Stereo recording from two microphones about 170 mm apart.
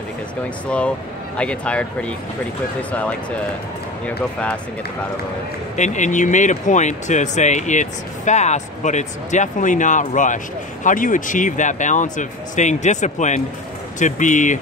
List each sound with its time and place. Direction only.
0.7 s speech: 5° left (ahead or behind)
5.8 s speech: 45° left (ahead or behind)